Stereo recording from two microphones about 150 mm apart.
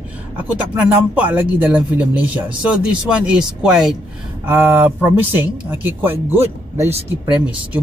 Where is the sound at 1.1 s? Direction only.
10° right (ahead or behind).